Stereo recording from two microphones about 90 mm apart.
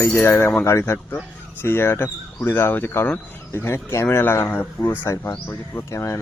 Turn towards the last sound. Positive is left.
turn(degrees=35)  # may be behind; listen again after turning